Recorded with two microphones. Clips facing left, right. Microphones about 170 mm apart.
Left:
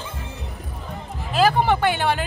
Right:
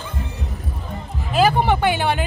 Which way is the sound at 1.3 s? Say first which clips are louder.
Right 1 dB; centre (ahead or behind).